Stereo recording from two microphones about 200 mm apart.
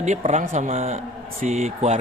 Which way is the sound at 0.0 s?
35° right (ahead or behind).